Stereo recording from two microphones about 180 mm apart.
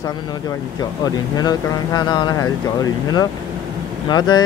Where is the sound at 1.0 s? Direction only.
20° left (ahead or behind).